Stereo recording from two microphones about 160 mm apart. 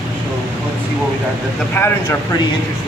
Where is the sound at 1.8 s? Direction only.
15° left (ahead or behind).